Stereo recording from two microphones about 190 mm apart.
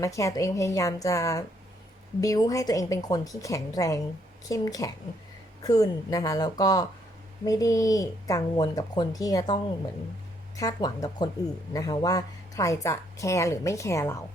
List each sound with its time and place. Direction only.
0.0 s a woman's voice: 15° left (ahead or behind)
10.6 s a woman's voice: 20° left (ahead or behind)